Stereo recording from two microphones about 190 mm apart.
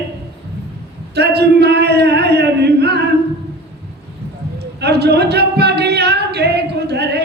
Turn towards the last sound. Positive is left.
turn(degrees=-60)  # may be behind; listen again after turning